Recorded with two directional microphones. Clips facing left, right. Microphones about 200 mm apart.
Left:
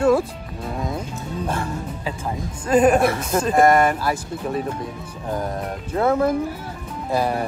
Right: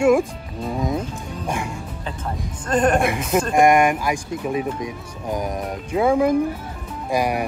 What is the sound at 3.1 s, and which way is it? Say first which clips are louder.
Speech: even; 10° right (ahead or behind).